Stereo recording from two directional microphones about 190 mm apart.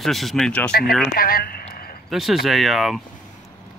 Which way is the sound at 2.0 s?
Centre (ahead or behind).